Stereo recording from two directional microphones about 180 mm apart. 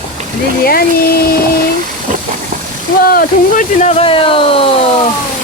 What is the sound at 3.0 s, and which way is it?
Speech, 50° left (ahead or behind).